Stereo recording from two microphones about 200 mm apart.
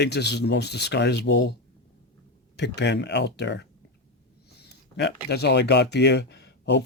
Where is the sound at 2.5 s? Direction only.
60° left (ahead or behind).